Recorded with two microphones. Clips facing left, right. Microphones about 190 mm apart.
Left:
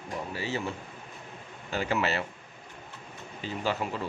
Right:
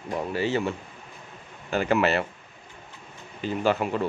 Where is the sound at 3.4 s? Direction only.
55° right (ahead or behind).